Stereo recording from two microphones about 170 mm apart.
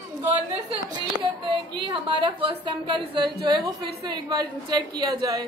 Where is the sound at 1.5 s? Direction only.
30° right (ahead or behind).